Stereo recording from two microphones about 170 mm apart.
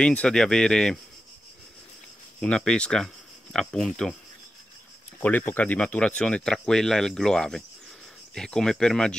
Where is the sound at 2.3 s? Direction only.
5° left (ahead or behind).